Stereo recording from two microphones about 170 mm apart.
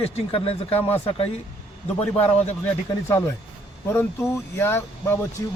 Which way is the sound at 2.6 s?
20° left (ahead or behind).